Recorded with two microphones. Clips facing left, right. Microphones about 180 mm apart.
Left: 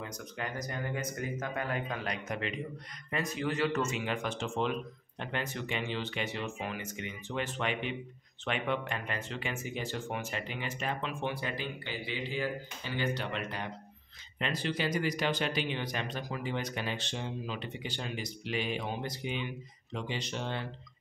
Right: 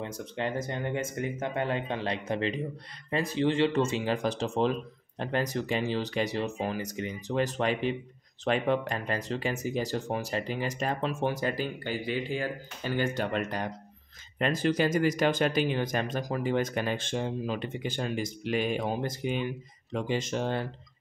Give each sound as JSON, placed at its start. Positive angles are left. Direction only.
{"t": 0.0, "sound": "speech", "side_deg": -30}